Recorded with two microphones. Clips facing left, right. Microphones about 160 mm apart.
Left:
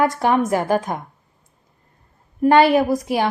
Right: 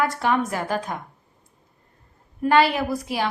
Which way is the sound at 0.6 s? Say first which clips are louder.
Left 7 dB; 50° left (ahead or behind).